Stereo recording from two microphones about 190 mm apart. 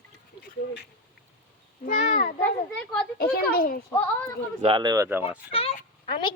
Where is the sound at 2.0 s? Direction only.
50° left (ahead or behind).